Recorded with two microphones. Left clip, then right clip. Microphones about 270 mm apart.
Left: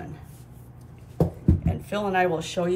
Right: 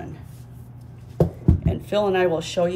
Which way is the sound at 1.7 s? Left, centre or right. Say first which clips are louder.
Right 8 dB; centre.